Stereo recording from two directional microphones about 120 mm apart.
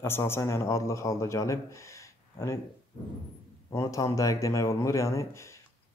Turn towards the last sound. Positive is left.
turn(degrees=25)  # may be behind; listen again after turning